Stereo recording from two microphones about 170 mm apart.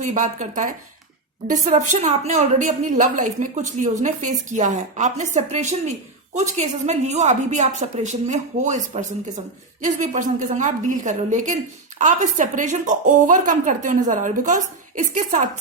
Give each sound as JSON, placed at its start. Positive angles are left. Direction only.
{"t": 0.0, "sound": "a woman's voice", "side_deg": -45}